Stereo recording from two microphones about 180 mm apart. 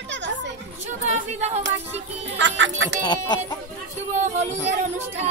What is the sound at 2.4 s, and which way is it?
Speech, 90° right.